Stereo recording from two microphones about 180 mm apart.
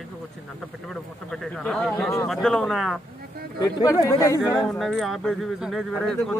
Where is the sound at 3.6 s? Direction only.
20° left (ahead or behind).